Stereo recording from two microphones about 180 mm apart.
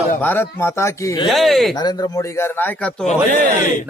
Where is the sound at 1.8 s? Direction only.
25° left (ahead or behind); by 3.0 s 5° left (ahead or behind).